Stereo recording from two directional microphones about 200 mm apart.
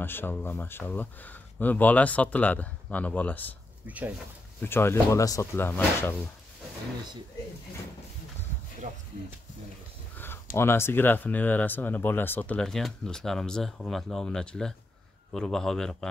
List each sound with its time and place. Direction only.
0.0 s speech: 10° left (ahead or behind)
3.8 s speech: 5° right (ahead or behind)
4.6 s speech: 10° left (ahead or behind)
8.8 s a sound: 35° right (ahead or behind)
10.1 s a sound: 10° left (ahead or behind)
10.6 s speech: 10° left (ahead or behind)